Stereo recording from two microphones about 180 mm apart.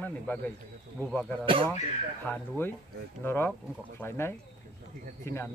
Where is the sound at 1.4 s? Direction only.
30° right (ahead or behind).